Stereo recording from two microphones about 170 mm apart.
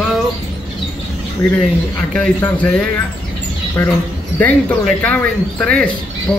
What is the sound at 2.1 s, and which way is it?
Speech, 5° left (ahead or behind).